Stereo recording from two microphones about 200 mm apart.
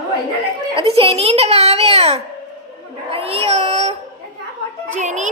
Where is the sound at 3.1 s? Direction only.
30° right (ahead or behind).